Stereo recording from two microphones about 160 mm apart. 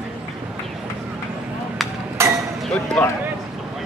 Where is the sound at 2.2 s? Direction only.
15° right (ahead or behind).